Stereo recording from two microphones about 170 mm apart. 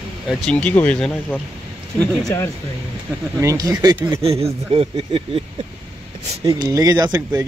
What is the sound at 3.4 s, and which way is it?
Speech, 20° right (ahead or behind).